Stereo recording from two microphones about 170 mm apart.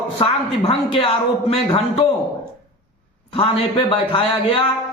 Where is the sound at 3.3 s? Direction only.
30° left (ahead or behind).